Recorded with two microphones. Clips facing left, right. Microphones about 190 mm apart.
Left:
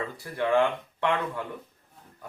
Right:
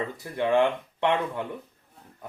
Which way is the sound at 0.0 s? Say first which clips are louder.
Right 2 dB; 20° right (ahead or behind).